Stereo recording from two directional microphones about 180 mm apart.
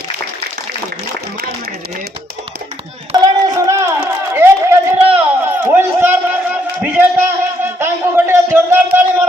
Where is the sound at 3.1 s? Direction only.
20° right (ahead or behind).